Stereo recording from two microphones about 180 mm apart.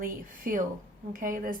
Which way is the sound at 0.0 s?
50° right (ahead or behind).